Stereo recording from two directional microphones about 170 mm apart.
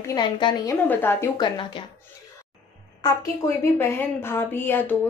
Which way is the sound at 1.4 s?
25° left (ahead or behind).